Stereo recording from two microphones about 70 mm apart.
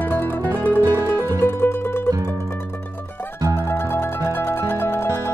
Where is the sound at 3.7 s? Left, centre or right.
Left.